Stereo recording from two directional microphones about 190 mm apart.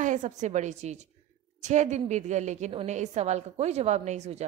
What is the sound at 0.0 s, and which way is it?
A woman's voice, 40° right (ahead or behind).